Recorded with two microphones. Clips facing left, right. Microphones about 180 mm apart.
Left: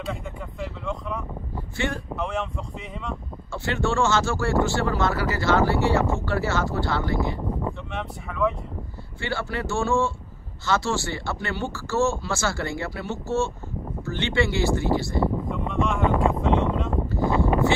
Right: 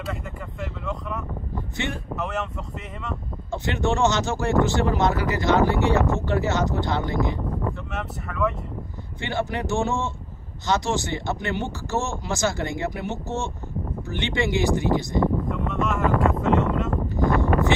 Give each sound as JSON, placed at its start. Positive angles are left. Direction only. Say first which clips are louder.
{"t": 0.6, "sound": "vehicle", "louder": "even", "side_deg": 0}
{"t": 2.1, "sound": "speech", "louder": "even", "side_deg": 0}
{"t": 3.5, "sound": "speech", "louder": "even", "side_deg": -20}
{"t": 7.9, "sound": "speech", "louder": "right 1 dB", "side_deg": 0}
{"t": 9.2, "sound": "speech", "louder": "right 2 dB", "side_deg": -20}
{"t": 15.2, "sound": "a sound", "louder": "right 2 dB", "side_deg": 5}